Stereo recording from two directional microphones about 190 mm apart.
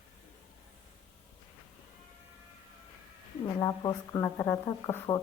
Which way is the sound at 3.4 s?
20° left (ahead or behind).